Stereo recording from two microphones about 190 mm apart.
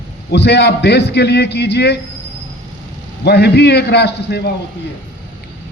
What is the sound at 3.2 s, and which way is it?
A man's voice, 60° left (ahead or behind).